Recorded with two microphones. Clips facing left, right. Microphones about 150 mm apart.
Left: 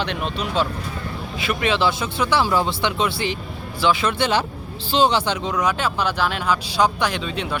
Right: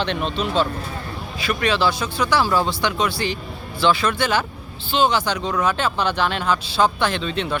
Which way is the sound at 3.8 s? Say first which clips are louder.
Right 1 dB; 10° left (ahead or behind).